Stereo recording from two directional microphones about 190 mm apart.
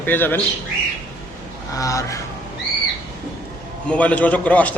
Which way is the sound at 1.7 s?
15° left (ahead or behind).